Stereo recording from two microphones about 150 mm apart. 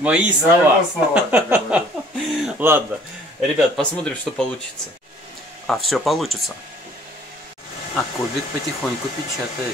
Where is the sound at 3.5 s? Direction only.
5° left (ahead or behind).